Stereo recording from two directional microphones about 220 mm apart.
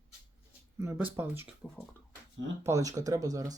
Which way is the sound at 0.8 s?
10° right (ahead or behind).